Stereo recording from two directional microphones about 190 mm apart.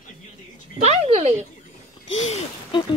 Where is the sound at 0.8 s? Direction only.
35° right (ahead or behind).